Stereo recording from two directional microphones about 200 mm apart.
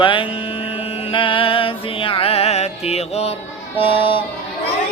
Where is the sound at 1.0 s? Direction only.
25° left (ahead or behind).